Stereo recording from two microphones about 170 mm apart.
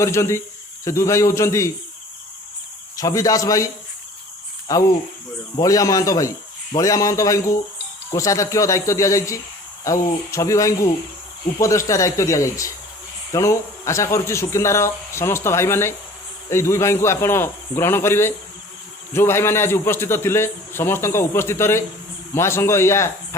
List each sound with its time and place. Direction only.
0.0 s a man's voice: 15° left (ahead or behind)
3.0 s a man's voice: 20° left (ahead or behind)
4.7 s a man's voice: 20° left (ahead or behind)